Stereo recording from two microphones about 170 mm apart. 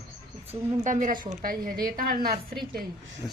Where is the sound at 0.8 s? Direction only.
50° right (ahead or behind).